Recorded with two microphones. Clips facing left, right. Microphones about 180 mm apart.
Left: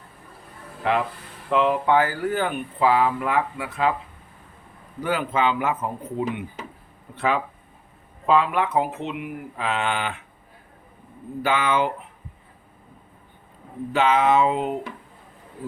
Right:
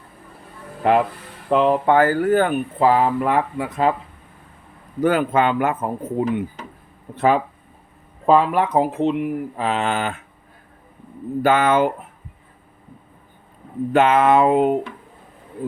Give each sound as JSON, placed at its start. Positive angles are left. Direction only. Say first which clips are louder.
{"t": 0.8, "sound": "speech", "louder": "right 6 dB", "side_deg": -50}
{"t": 1.5, "sound": "speech", "louder": "right 4 dB", "side_deg": -35}
{"t": 4.9, "sound": "speech", "louder": "right 6 dB", "side_deg": -50}
{"t": 11.4, "sound": "speech", "louder": "right 6 dB", "side_deg": -50}
{"t": 13.9, "sound": "speech", "louder": "right 4 dB", "side_deg": -55}